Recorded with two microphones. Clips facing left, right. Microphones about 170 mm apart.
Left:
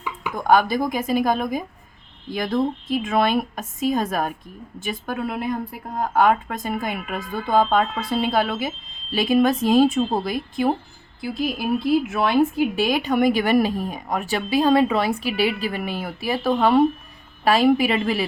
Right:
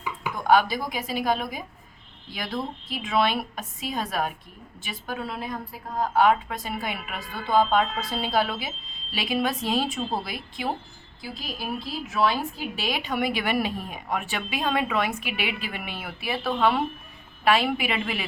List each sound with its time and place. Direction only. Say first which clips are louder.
0.3 s a woman's voice: left 3 dB; 50° left (ahead or behind)